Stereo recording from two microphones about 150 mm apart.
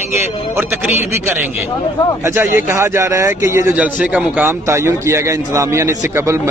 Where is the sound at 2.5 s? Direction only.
15° right (ahead or behind).